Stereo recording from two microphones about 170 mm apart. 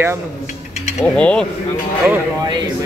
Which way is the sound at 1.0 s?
5° left (ahead or behind).